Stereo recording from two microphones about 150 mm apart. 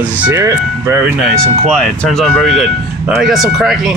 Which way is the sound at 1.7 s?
5° left (ahead or behind).